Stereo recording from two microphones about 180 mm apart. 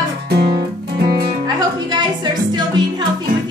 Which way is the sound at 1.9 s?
25° right (ahead or behind).